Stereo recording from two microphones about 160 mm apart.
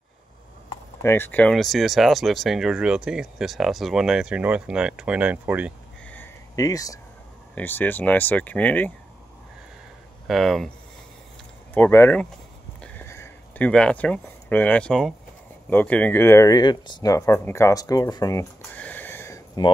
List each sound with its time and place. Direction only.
1.0 s speech: 15° left (ahead or behind); by 5.7 s 10° right (ahead or behind)
6.0 s a sound: 10° left (ahead or behind)
6.5 s speech: 20° left (ahead or behind)
7.5 s speech: 10° left (ahead or behind)
10.2 s speech: centre (ahead or behind)
11.7 s speech: 15° left (ahead or behind)
12.8 s a sound: 15° left (ahead or behind)
15.7 s speech: 10° left (ahead or behind)
18.8 s a sound: 10° left (ahead or behind)